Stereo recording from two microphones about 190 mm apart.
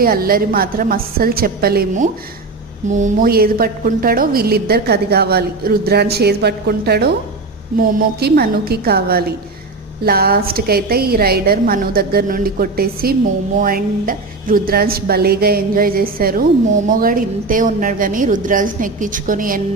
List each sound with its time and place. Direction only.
0.0 s a woman's voice: 50° right (ahead or behind)